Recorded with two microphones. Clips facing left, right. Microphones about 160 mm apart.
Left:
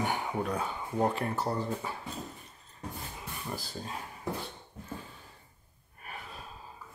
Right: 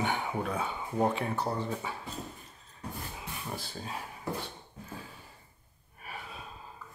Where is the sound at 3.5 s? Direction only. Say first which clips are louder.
Left 1 dB; centre (ahead or behind).